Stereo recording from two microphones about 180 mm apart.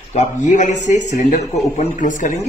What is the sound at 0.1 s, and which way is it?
Speech, 40° left (ahead or behind).